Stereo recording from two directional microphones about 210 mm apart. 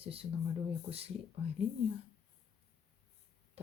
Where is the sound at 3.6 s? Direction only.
30° right (ahead or behind).